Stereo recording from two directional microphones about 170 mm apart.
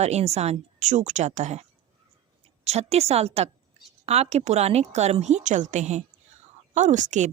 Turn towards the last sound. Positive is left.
turn(degrees=-45)  # may be behind; listen again after turning